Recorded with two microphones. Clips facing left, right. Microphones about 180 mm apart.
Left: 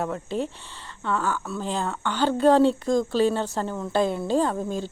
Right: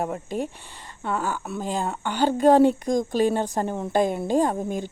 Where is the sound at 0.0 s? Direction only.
15° right (ahead or behind).